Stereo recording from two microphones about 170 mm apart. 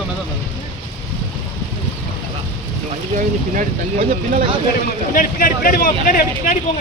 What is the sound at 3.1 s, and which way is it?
Speech, 50° right (ahead or behind).